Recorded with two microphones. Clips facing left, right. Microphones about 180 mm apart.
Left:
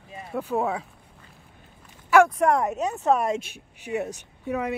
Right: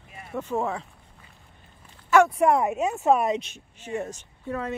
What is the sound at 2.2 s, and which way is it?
Speech, 5° right (ahead or behind).